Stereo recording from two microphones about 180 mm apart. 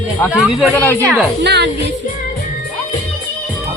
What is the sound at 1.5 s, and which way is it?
Speech, 70° right (ahead or behind).